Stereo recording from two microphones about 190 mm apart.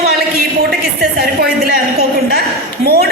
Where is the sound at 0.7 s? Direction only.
55° right (ahead or behind).